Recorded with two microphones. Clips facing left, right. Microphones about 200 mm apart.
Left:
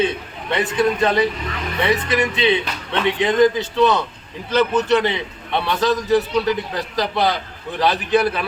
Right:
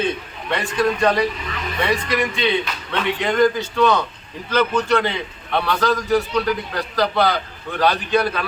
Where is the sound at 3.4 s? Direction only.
20° left (ahead or behind).